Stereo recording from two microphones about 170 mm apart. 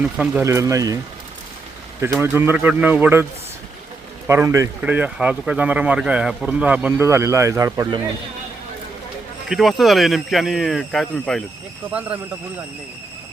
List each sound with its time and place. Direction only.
0.2 s speech: 15° right (ahead or behind)
2.0 s speech: 15° right (ahead or behind)
4.3 s speech: 15° right (ahead or behind)
9.5 s speech: centre (ahead or behind)